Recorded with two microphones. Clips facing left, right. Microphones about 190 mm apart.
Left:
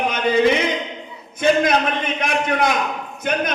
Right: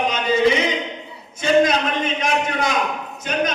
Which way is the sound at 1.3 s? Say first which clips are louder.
Even; 55° left (ahead or behind).